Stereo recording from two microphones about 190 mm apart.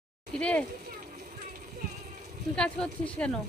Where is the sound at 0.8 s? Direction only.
40° right (ahead or behind).